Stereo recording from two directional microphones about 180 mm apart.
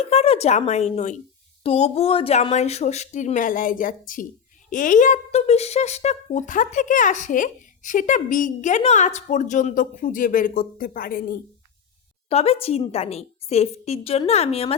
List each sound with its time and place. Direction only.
0.0 s speech: 35° left (ahead or behind); by 11.3 s 55° left (ahead or behind)
12.3 s speech: 35° left (ahead or behind)